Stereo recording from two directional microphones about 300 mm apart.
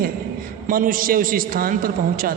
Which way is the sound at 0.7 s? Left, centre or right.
Right.